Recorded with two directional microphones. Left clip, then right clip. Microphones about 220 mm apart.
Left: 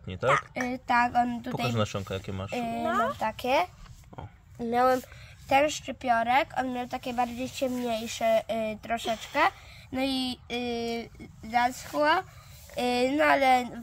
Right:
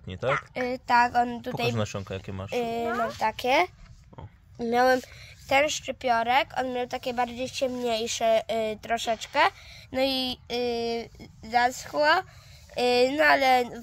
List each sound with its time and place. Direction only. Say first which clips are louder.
0.0 s a woman's voice: left 1 dB; 15° right (ahead or behind)
0.6 s speech: right 3 dB; 40° right (ahead or behind)
1.7 s speech: even; 10° right (ahead or behind)
2.5 s speech: right 1 dB; 40° right (ahead or behind)